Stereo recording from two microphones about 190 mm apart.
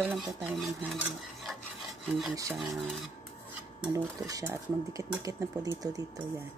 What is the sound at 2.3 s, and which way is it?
Speech, 15° right (ahead or behind).